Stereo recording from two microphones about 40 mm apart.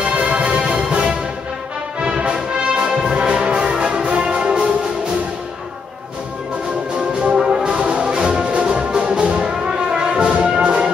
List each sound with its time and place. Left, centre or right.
0.2 s music: right
7.0 s brass instrument: right
8.5 s music: right